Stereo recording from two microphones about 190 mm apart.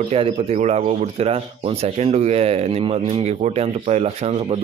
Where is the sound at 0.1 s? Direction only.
30° right (ahead or behind).